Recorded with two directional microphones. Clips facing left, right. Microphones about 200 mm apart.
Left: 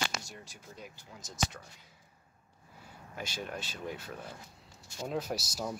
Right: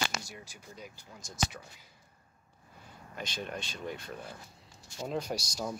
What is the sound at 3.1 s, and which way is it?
Speech, 5° left (ahead or behind).